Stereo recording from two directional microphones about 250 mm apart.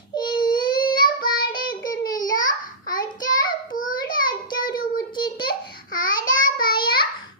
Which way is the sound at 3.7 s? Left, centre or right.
Left.